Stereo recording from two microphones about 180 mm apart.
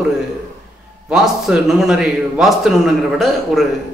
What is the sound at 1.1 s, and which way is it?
A man's voice, centre (ahead or behind).